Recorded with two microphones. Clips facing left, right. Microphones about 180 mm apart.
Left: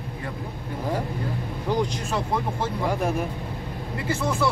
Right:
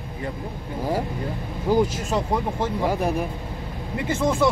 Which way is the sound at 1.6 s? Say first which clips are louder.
Right 5 dB; 5° right (ahead or behind).